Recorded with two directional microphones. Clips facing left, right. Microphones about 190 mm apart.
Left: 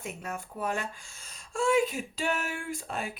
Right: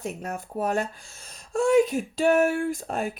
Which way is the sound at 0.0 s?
40° right (ahead or behind).